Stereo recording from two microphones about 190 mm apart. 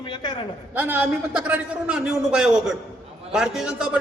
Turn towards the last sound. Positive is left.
turn(degrees=-5)  # may be behind; listen again after turning